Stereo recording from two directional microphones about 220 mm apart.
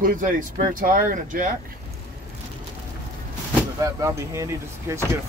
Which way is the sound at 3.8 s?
15° right (ahead or behind).